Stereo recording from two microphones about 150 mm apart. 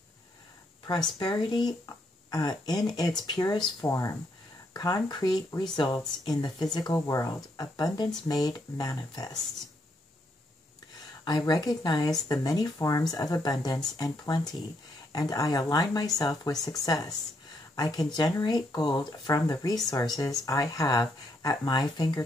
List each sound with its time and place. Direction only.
1.2 s speech: 30° left (ahead or behind)
11.2 s speech: 25° left (ahead or behind)